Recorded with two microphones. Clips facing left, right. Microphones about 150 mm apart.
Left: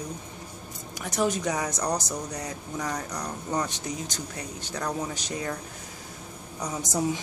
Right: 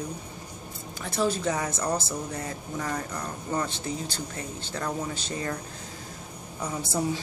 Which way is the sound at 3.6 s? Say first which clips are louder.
Right 1 dB; 15° left (ahead or behind).